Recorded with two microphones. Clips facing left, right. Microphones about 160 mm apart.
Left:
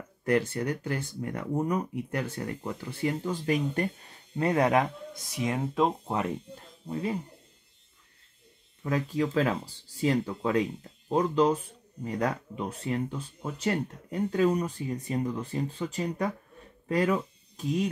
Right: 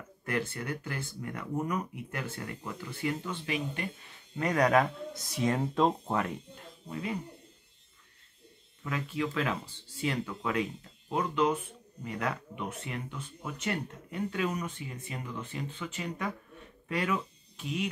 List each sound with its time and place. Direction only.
0.2 s speech: 35° left (ahead or behind); by 6.1 s 10° left (ahead or behind)
6.9 s speech: 30° left (ahead or behind)
8.8 s speech: 35° left (ahead or behind)